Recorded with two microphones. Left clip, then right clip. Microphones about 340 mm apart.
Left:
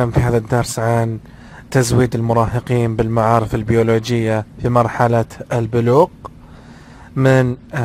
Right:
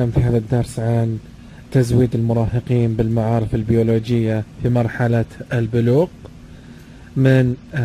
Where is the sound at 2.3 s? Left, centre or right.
Left.